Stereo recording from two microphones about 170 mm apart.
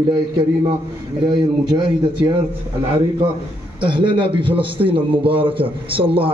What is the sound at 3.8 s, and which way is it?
A man's voice, 30° right (ahead or behind).